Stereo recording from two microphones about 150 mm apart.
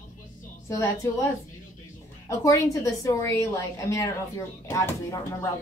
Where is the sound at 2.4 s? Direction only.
20° left (ahead or behind).